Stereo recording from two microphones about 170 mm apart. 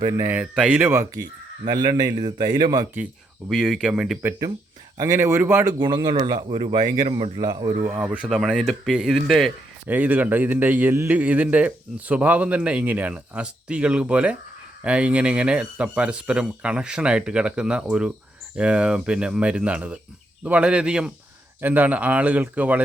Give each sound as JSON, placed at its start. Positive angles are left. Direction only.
{"t": 0.0, "sound": "a man's voice", "side_deg": -15}
{"t": 1.6, "sound": "speech", "side_deg": -25}
{"t": 3.5, "sound": "a man's voice", "side_deg": 0}
{"t": 5.8, "sound": "a man's voice", "side_deg": -25}